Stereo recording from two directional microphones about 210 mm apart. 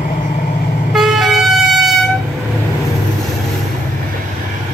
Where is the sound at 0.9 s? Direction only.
Centre (ahead or behind).